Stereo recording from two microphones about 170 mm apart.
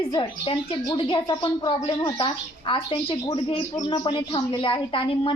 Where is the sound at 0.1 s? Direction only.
25° left (ahead or behind).